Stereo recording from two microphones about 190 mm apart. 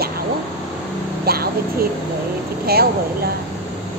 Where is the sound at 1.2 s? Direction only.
55° right (ahead or behind).